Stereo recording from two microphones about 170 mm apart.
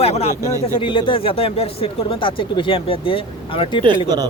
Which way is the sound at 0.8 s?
30° left (ahead or behind).